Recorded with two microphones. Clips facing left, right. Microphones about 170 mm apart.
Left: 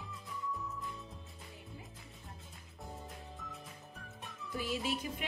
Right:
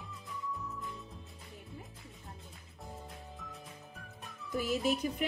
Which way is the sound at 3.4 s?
Centre (ahead or behind).